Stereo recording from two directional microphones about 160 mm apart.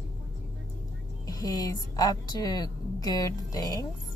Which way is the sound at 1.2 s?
20° left (ahead or behind).